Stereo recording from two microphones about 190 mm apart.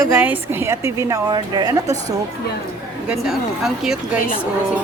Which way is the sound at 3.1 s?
Centre (ahead or behind).